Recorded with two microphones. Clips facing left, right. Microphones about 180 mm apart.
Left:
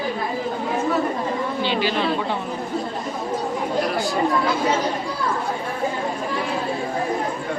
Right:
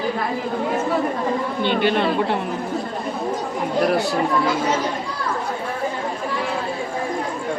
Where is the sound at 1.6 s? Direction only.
55° right (ahead or behind).